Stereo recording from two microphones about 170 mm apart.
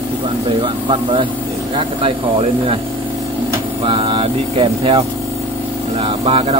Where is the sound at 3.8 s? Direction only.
30° right (ahead or behind).